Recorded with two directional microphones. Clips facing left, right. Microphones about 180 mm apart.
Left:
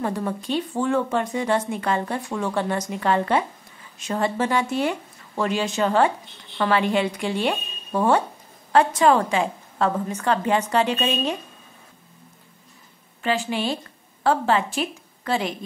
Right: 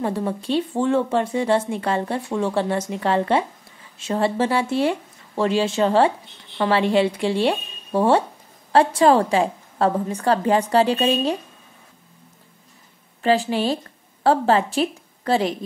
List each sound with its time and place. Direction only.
0.0 s a woman's voice: 30° right (ahead or behind)
13.2 s a woman's voice: 35° right (ahead or behind)